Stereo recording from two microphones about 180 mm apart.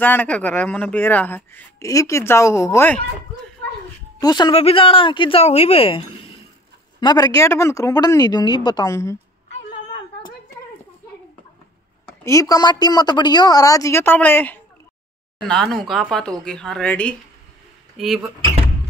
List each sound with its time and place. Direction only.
0.0 s speech: 10° left (ahead or behind)
4.2 s a woman's voice: 25° left (ahead or behind)
7.0 s a woman's voice: 20° left (ahead or behind)
12.2 s a woman's voice: 15° left (ahead or behind); by 18.3 s centre (ahead or behind)